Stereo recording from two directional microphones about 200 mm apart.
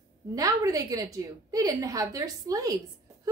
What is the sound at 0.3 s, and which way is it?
A woman's voice, 15° right (ahead or behind).